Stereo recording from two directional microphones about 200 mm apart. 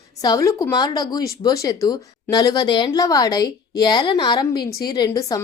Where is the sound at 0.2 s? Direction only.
20° left (ahead or behind).